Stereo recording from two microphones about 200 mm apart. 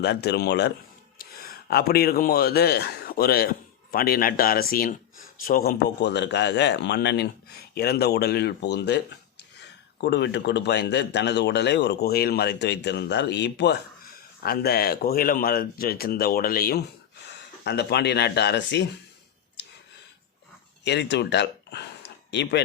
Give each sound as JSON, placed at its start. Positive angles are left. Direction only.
{"t": 0.0, "sound": "a man's voice", "side_deg": 55}
{"t": 5.7, "sound": "speech", "side_deg": 60}
{"t": 10.0, "sound": "speech", "side_deg": 60}
{"t": 20.8, "sound": "speech", "side_deg": 60}